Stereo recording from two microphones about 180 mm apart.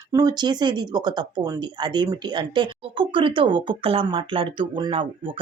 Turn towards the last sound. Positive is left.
turn(degrees=-30)  # may be behind; listen again after turning